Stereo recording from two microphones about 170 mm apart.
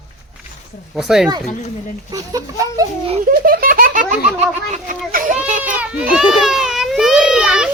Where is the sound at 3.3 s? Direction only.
55° right (ahead or behind).